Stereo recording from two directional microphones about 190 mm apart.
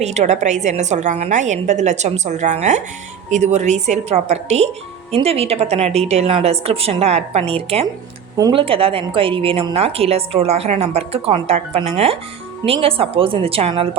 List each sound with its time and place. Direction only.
0.0 s a woman's voice: 35° right (ahead or behind)
8.4 s speech: 20° right (ahead or behind)
8.6 s a woman's voice: 30° right (ahead or behind)